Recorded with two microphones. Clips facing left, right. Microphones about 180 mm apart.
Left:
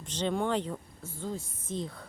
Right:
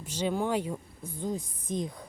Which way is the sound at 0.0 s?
10° right (ahead or behind).